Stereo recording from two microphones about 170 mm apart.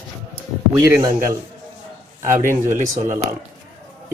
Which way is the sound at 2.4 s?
50° right (ahead or behind).